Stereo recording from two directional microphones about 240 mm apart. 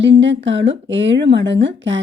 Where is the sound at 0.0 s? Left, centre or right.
Right.